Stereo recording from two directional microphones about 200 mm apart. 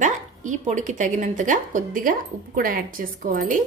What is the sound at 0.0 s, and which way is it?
A woman's voice, 40° right (ahead or behind).